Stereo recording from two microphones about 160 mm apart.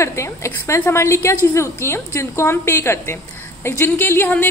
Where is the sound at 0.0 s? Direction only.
15° left (ahead or behind).